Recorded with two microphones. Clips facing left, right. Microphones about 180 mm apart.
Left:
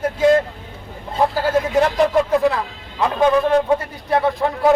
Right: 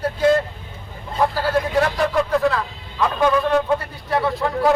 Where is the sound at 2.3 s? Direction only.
20° left (ahead or behind).